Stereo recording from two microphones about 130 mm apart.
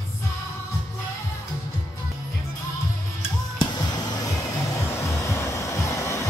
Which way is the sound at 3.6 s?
30° left (ahead or behind).